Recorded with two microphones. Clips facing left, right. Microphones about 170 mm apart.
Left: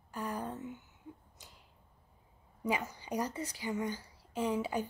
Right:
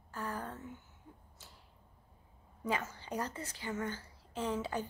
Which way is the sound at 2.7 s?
15° left (ahead or behind).